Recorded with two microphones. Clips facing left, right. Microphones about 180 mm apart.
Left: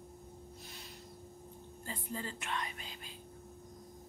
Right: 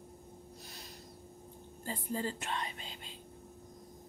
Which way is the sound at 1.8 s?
35° right (ahead or behind).